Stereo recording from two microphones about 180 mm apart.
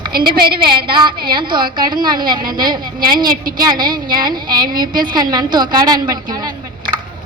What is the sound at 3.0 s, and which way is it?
Speech, 55° right (ahead or behind).